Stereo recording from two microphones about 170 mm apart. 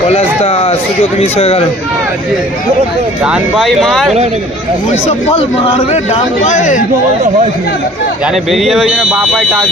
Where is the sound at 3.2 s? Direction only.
5° right (ahead or behind).